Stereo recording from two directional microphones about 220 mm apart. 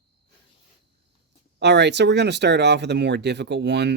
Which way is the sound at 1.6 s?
50° right (ahead or behind).